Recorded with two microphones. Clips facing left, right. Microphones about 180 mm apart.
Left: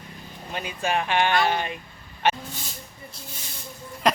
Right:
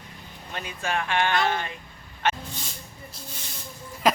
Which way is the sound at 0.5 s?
15° left (ahead or behind).